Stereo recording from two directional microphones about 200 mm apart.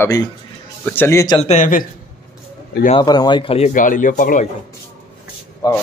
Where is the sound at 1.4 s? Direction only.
35° left (ahead or behind).